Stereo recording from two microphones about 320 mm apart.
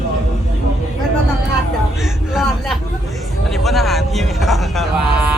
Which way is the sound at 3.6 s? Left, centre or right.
Centre.